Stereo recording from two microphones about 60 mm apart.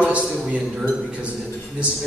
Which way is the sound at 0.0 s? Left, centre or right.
Right.